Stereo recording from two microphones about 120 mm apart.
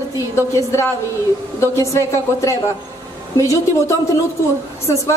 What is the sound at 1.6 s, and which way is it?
A woman's voice, 25° left (ahead or behind).